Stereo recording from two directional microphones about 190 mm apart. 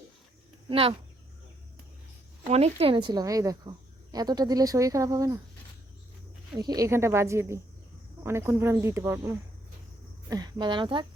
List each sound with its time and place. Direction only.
0.7 s speech: 30° right (ahead or behind)
2.5 s speech: 35° right (ahead or behind); by 5.4 s 15° right (ahead or behind)
6.6 s speech: 20° right (ahead or behind)